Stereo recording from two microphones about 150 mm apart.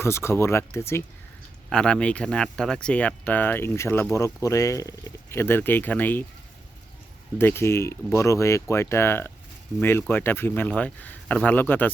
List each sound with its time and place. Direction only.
0.0 s speech: 15° left (ahead or behind)
1.7 s speech: 5° left (ahead or behind)
7.3 s speech: 15° left (ahead or behind)